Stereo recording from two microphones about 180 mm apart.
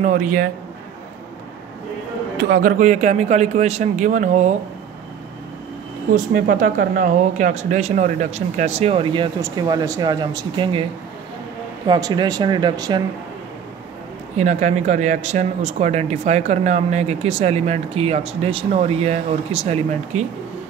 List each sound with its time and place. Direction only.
0.0 s a man's voice: 50° right (ahead or behind)
2.3 s a man's voice: 55° right (ahead or behind)
6.1 s speech: 50° right (ahead or behind); by 10.9 s 30° right (ahead or behind)
11.9 s speech: 25° right (ahead or behind)
14.3 s speech: 40° right (ahead or behind)